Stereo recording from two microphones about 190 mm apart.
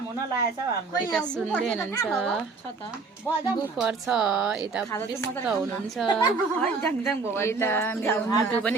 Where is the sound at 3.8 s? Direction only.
5° right (ahead or behind).